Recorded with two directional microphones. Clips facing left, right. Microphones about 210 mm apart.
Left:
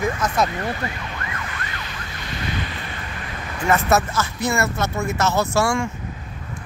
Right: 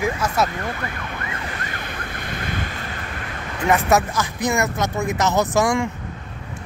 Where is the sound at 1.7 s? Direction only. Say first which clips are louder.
Right 3 dB; 50° right (ahead or behind).